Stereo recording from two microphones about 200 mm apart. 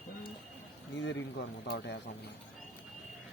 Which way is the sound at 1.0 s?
65° left (ahead or behind).